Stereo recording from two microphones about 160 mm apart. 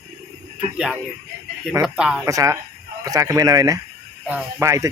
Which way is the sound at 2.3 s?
20° right (ahead or behind).